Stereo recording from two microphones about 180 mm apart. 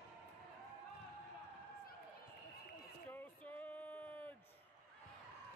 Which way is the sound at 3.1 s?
10° left (ahead or behind).